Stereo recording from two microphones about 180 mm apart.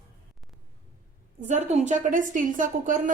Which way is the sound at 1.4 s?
40° right (ahead or behind).